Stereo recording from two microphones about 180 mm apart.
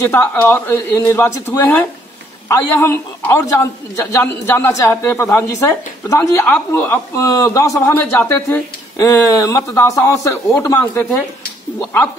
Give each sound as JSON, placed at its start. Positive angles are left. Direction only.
{"t": 0.0, "sound": "a man's voice", "side_deg": 15}